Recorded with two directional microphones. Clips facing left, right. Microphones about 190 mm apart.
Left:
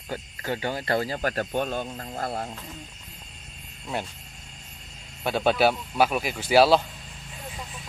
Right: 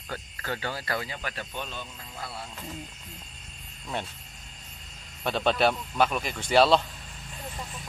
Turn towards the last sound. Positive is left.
turn(degrees=5)  # may be behind; listen again after turning